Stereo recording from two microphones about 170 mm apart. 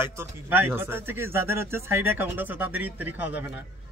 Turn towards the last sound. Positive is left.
turn(degrees=-10)  # may be behind; listen again after turning